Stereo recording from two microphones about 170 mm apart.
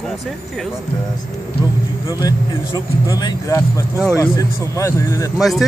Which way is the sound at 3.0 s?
20° left (ahead or behind).